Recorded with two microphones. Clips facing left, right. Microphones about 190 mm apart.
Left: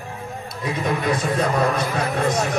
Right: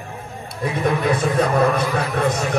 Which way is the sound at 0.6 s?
55° right (ahead or behind).